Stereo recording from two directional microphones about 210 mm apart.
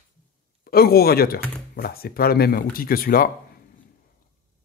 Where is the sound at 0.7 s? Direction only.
45° left (ahead or behind).